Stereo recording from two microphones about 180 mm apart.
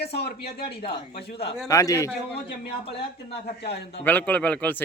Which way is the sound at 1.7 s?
20° left (ahead or behind).